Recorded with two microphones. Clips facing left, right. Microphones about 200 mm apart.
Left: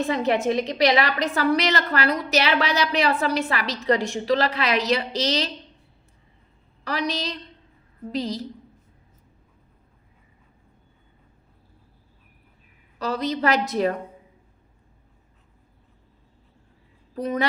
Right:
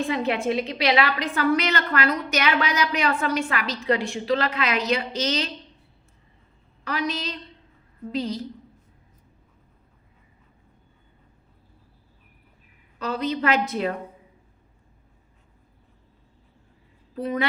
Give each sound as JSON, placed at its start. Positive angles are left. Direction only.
{"t": 0.1, "sound": "a woman's voice", "side_deg": 40}
{"t": 6.8, "sound": "a woman's voice", "side_deg": 35}
{"t": 13.0, "sound": "a woman's voice", "side_deg": 40}
{"t": 17.2, "sound": "a woman's voice", "side_deg": 40}